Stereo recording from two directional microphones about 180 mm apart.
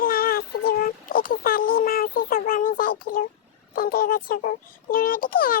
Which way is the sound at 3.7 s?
55° left (ahead or behind).